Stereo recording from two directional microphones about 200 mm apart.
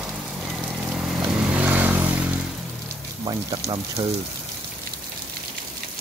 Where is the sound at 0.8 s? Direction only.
5° right (ahead or behind).